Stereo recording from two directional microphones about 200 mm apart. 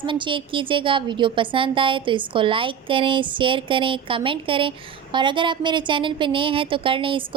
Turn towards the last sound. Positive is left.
turn(degrees=-25)  # may be behind; listen again after turning